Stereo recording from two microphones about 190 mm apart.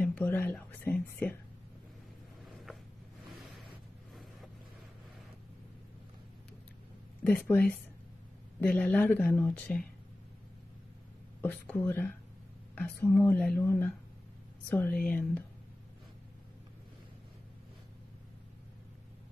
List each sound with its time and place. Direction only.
0.0 s speech: 5° left (ahead or behind)
2.5 s a sound: centre (ahead or behind)
8.5 s speech: 5° left (ahead or behind)
11.4 s speech: 5° left (ahead or behind)